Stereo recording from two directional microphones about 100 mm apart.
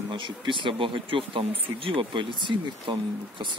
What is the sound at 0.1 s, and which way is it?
Speech, 55° right (ahead or behind).